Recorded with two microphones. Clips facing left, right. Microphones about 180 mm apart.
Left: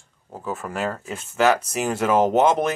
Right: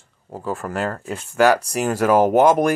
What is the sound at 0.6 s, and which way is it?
Mantra, 5° left (ahead or behind).